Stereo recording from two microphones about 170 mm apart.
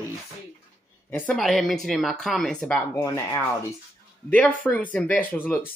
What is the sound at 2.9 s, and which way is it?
Speech, 20° left (ahead or behind).